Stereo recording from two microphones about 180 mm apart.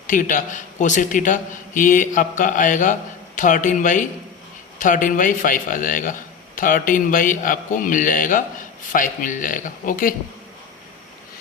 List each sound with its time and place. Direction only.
0.1 s a man's voice: 45° left (ahead or behind)